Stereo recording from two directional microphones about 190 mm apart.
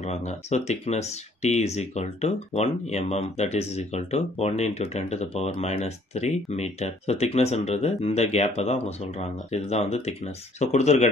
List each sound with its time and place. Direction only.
0.0 s speech: 35° left (ahead or behind)